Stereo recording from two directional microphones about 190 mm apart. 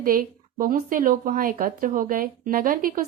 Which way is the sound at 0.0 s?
45° right (ahead or behind).